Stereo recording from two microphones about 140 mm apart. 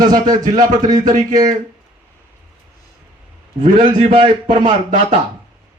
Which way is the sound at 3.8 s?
35° right (ahead or behind).